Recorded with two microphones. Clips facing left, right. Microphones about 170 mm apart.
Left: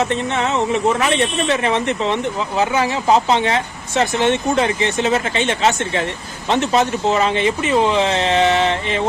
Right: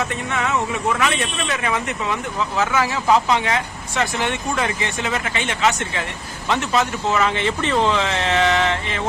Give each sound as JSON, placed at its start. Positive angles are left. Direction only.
{"t": 0.0, "sound": "speech", "side_deg": 30}